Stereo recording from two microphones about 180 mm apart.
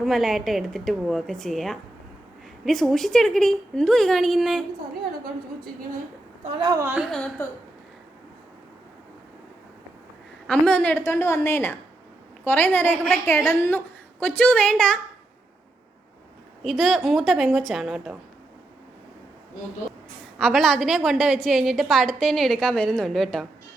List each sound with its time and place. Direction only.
0.0 s a woman's voice: centre (ahead or behind)
6.4 s a woman's voice: 25° right (ahead or behind)
6.8 s a woman's voice: 5° right (ahead or behind)
7.1 s a woman's voice: 5° left (ahead or behind)
10.4 s a woman's voice: 5° left (ahead or behind)
16.6 s a woman's voice: centre (ahead or behind)
20.4 s a woman's voice: centre (ahead or behind)